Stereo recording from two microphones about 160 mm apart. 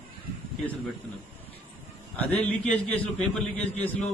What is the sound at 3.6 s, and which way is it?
Speech, 40° left (ahead or behind).